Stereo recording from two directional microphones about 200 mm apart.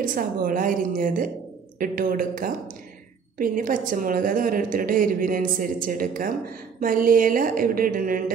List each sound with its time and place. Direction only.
0.0 s a woman's voice: 45° right (ahead or behind)